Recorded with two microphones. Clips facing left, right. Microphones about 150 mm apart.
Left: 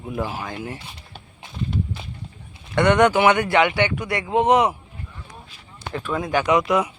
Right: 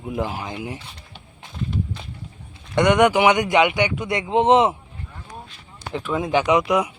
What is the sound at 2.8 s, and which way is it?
Speech, 15° right (ahead or behind).